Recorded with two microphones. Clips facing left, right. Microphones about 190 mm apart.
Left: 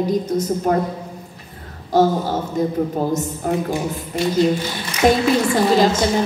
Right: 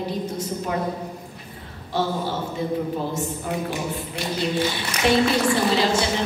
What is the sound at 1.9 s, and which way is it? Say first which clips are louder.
A woman's voice: left 8 dB; 40° left (ahead or behind).